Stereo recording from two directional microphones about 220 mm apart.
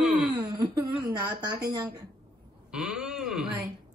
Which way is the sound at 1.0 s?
20° right (ahead or behind).